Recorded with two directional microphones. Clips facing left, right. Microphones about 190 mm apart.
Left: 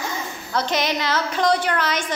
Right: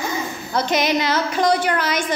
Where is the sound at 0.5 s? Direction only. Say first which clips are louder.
Right 3 dB; 15° right (ahead or behind).